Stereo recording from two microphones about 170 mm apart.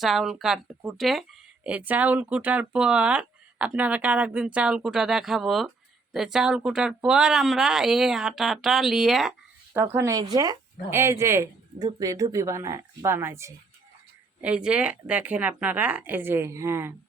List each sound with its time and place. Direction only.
0.0 s speech: centre (ahead or behind)
9.7 s speech: 15° right (ahead or behind)